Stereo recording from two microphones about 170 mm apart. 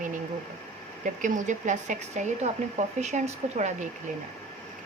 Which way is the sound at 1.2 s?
45° right (ahead or behind).